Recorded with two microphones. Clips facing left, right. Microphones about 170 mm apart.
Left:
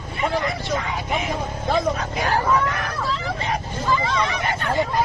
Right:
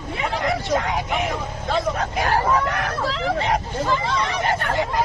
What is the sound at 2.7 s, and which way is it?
Hubbub, 75° right (ahead or behind).